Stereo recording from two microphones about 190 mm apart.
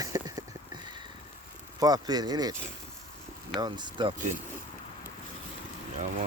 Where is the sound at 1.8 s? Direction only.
20° right (ahead or behind).